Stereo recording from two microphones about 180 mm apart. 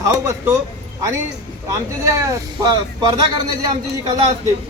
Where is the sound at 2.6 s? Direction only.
20° right (ahead or behind).